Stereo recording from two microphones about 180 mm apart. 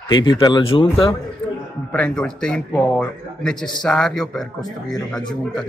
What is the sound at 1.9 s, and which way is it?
A man's voice, 5° left (ahead or behind).